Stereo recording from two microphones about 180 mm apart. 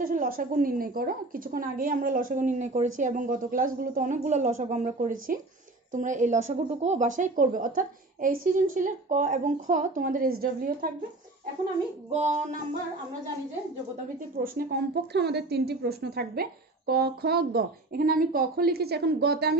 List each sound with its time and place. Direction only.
0.0 s a woman's voice: 50° right (ahead or behind)
12.1 s music: 40° right (ahead or behind)
14.4 s a woman's voice: 55° right (ahead or behind)